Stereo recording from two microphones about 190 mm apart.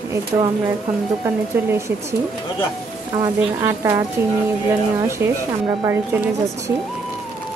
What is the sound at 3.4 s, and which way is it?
Speech, 15° right (ahead or behind).